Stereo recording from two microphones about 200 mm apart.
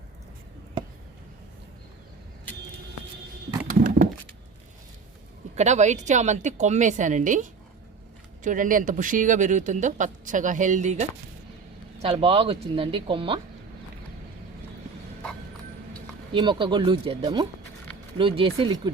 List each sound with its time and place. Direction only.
3.7 s a sound: 45° right (ahead or behind)
5.5 s speech: 35° right (ahead or behind)
16.3 s speech: 25° right (ahead or behind)